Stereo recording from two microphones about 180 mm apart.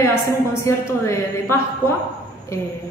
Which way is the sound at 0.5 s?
15° left (ahead or behind).